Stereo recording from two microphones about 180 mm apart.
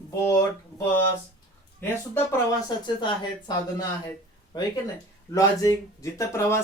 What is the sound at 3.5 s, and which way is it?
Speech, 25° left (ahead or behind).